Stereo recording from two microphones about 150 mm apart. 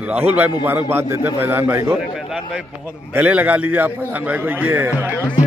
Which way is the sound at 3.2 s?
10° right (ahead or behind).